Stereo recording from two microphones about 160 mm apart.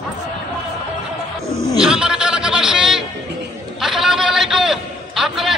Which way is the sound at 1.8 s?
5° right (ahead or behind).